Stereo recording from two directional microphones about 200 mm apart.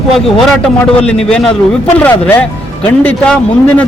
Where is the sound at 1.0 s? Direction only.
5° left (ahead or behind).